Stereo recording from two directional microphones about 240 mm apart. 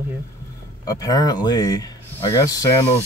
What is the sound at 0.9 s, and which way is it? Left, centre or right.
Speech, centre.